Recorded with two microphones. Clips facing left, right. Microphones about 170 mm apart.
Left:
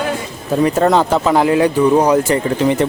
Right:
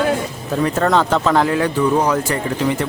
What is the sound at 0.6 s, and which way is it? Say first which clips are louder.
A man's voice: left 3 dB; 15° left (ahead or behind).